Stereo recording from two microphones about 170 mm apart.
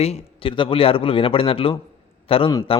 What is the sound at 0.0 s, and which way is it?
A man's voice, 35° left (ahead or behind).